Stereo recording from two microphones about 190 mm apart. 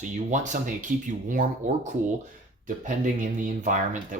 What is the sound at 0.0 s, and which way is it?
Speech, 40° right (ahead or behind).